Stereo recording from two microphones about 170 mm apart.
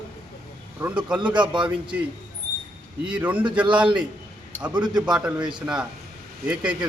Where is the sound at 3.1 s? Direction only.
10° right (ahead or behind).